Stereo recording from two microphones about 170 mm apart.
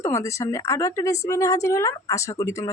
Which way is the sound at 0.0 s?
15° left (ahead or behind).